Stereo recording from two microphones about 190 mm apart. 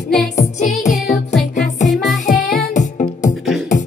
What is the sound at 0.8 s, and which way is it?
Music, 40° left (ahead or behind).